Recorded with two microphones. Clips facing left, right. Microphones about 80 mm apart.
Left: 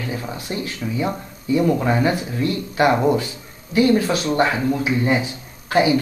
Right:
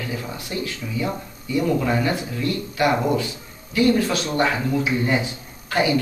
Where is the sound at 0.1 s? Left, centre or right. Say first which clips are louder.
Left 2 dB; left.